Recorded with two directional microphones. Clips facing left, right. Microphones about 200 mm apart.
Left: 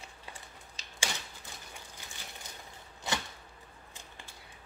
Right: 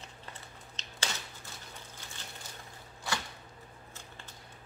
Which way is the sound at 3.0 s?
20° left (ahead or behind).